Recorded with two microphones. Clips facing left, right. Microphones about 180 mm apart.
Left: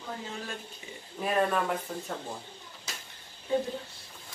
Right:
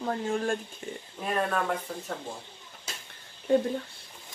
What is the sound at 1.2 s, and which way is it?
Speech, 5° left (ahead or behind).